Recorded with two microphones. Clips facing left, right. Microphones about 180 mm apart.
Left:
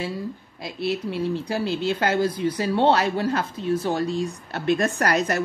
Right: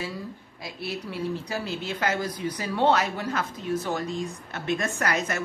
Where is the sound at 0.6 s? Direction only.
25° left (ahead or behind).